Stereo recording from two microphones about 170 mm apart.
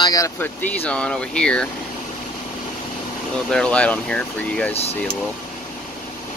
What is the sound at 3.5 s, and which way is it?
Speech, 5° left (ahead or behind).